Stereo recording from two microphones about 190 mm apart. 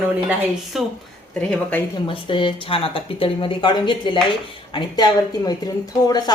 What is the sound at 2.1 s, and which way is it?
A woman's voice, 25° left (ahead or behind).